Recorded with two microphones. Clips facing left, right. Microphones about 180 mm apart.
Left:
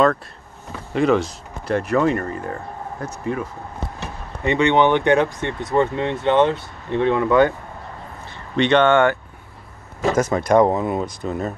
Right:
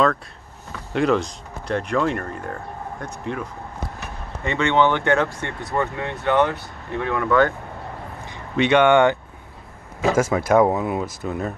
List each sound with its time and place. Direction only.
0.9 s speech: 5° left (ahead or behind)
4.0 s speech: 20° left (ahead or behind)
8.3 s speech: 10° right (ahead or behind)
10.1 s speech: 10° right (ahead or behind)